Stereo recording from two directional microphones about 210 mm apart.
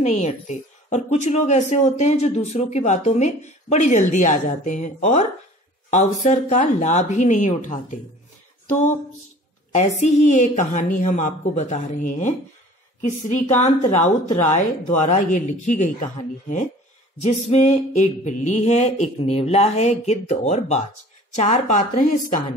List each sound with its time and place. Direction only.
0.0 s speech: 35° left (ahead or behind)
8.6 s a sound: 35° left (ahead or behind)
9.8 s speech: 35° left (ahead or behind)
17.2 s speech: 30° left (ahead or behind)